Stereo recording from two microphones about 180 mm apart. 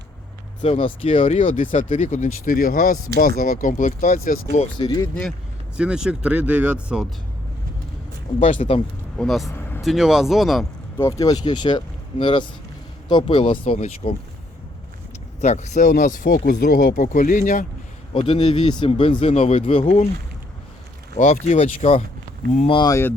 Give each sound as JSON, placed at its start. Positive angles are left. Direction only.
{"t": 0.6, "sound": "speech", "side_deg": 35}
{"t": 1.4, "sound": "speech", "side_deg": 45}
{"t": 4.8, "sound": "speech", "side_deg": 25}
{"t": 5.7, "sound": "speech", "side_deg": -5}
{"t": 8.4, "sound": "speech", "side_deg": 45}
{"t": 9.1, "sound": "speech", "side_deg": 0}
{"t": 9.5, "sound": "vehicle", "side_deg": 10}
{"t": 9.8, "sound": "speech", "side_deg": 0}
{"t": 10.9, "sound": "speech", "side_deg": 20}
{"t": 15.4, "sound": "speech", "side_deg": 40}
{"t": 18.1, "sound": "speech", "side_deg": 30}
{"t": 21.2, "sound": "speech", "side_deg": 40}